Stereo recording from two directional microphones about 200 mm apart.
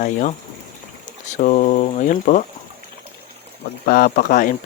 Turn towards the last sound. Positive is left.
turn(degrees=40)  # may be behind; listen again after turning